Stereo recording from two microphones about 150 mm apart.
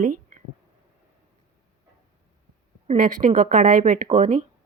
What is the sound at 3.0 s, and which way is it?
A woman's voice, 60° right (ahead or behind).